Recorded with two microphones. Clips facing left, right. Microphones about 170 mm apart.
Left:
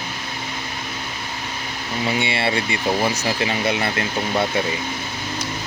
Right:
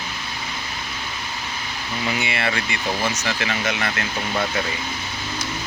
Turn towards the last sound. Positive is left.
turn(degrees=30)  # may be behind; listen again after turning